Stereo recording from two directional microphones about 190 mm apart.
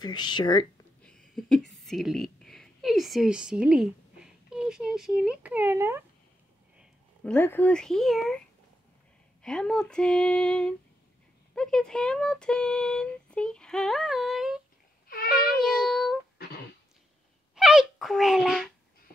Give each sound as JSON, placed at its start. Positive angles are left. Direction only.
{"t": 0.0, "sound": "speech", "side_deg": 25}
{"t": 1.3, "sound": "a woman's voice", "side_deg": 0}
{"t": 6.8, "sound": "speech", "side_deg": 5}
{"t": 9.4, "sound": "speech", "side_deg": 5}
{"t": 15.3, "sound": "child singing", "side_deg": 0}
{"t": 17.6, "sound": "speech", "side_deg": 0}